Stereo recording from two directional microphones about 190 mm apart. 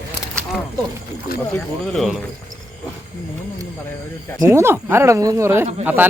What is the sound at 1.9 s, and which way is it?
Speech, centre (ahead or behind).